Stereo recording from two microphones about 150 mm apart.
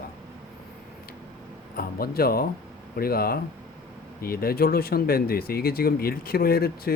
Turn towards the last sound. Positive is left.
turn(degrees=85)